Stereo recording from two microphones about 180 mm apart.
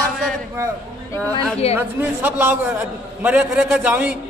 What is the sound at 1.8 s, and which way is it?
A man's voice, 10° right (ahead or behind).